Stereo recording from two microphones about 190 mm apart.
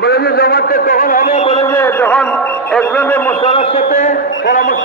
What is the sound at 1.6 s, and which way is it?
A man's voice, 10° left (ahead or behind).